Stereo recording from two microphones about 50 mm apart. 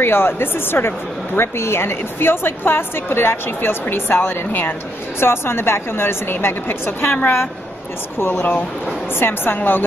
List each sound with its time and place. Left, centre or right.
0.0 s speech: left
5.2 s speech: left
9.2 s speech: left